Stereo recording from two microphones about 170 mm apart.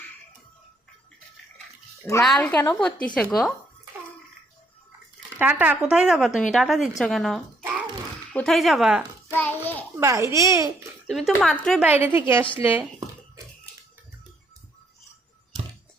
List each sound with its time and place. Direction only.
2.2 s speech: 5° left (ahead or behind)
5.4 s speech: 10° right (ahead or behind)
9.4 s a sound: 10° left (ahead or behind)
10.0 s speech: 15° right (ahead or behind)
11.0 s speech: centre (ahead or behind)
11.9 s speech: 10° right (ahead or behind)